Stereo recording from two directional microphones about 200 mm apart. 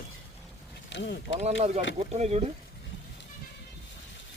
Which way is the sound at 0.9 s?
60° left (ahead or behind).